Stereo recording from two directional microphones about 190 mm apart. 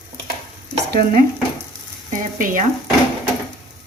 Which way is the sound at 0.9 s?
50° right (ahead or behind).